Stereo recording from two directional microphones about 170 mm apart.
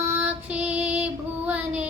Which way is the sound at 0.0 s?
10° right (ahead or behind).